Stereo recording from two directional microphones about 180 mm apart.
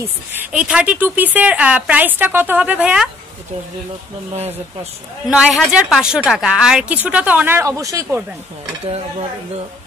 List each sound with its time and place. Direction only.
0.3 s a woman's voice: 10° right (ahead or behind)
4.3 s speech: 35° right (ahead or behind)
5.2 s a woman's voice: 5° right (ahead or behind)